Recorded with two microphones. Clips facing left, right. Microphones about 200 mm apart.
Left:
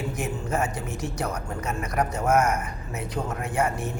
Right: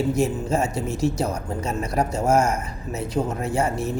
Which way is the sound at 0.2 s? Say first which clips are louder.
Right 6 dB; 25° right (ahead or behind).